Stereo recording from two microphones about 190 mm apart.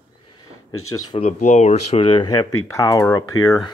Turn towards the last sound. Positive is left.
turn(degrees=15)  # may be behind; listen again after turning